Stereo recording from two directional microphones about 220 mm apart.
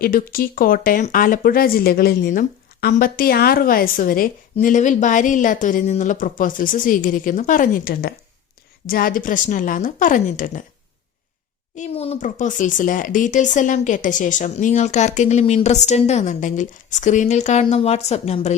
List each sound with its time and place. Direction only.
0.0 s speech: 40° left (ahead or behind)
11.8 s speech: 30° left (ahead or behind)